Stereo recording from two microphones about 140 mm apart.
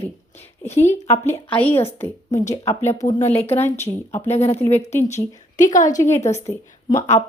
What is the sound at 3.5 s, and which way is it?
Speech, 15° left (ahead or behind).